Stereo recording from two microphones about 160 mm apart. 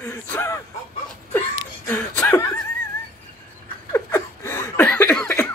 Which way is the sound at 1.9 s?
15° left (ahead or behind).